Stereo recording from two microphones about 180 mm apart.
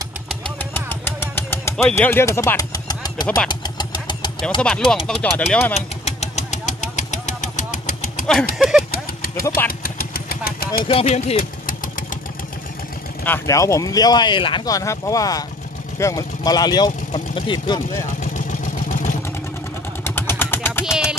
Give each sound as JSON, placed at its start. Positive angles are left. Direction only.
{"t": 0.7, "sound": "a sound", "side_deg": 10}
{"t": 3.4, "sound": "vehicle", "side_deg": 25}
{"t": 4.6, "sound": "speech", "side_deg": 5}
{"t": 5.8, "sound": "engine", "side_deg": 35}
{"t": 8.5, "sound": "speech", "side_deg": -5}
{"t": 9.8, "sound": "vehicle", "side_deg": 55}
{"t": 10.9, "sound": "speech", "side_deg": 30}
{"t": 13.2, "sound": "speech", "side_deg": 15}
{"t": 20.0, "sound": "vehicle", "side_deg": 10}
{"t": 20.8, "sound": "a sound", "side_deg": -5}